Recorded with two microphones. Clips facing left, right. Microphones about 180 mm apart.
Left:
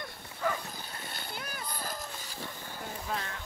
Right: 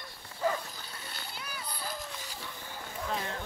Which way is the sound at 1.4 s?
50° left (ahead or behind).